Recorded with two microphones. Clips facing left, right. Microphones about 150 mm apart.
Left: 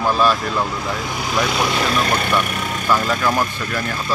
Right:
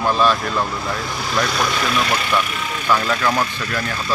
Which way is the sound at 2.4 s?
45° left (ahead or behind).